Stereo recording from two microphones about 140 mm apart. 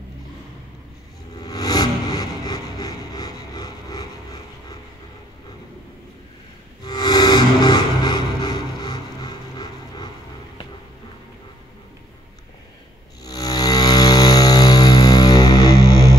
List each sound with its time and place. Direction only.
1.3 s a sound: 30° left (ahead or behind)
6.8 s music: 30° left (ahead or behind)
13.2 s music: 30° left (ahead or behind)